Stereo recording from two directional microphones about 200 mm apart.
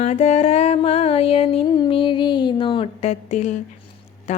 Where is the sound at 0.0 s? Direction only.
35° left (ahead or behind).